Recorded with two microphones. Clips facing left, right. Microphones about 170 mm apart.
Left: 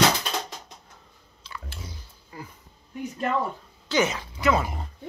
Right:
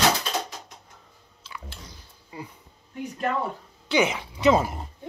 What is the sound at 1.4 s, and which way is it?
Chewing, 5° right (ahead or behind).